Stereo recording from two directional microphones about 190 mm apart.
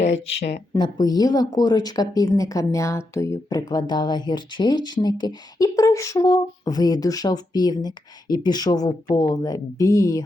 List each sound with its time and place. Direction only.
0.0 s speech: 35° left (ahead or behind)
0.7 s speech: 20° left (ahead or behind)